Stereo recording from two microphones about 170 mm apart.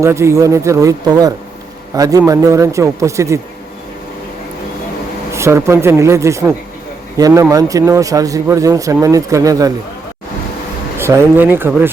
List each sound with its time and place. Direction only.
0.0 s a man's voice: 15° right (ahead or behind)
5.3 s a man's voice: 15° right (ahead or behind)
10.9 s a man's voice: 15° right (ahead or behind)